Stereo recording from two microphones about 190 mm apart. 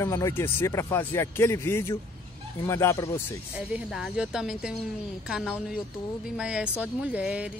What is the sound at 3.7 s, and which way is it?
Speech, 5° right (ahead or behind).